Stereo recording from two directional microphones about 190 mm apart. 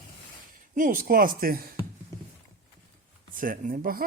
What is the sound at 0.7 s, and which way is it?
Speech, 45° right (ahead or behind).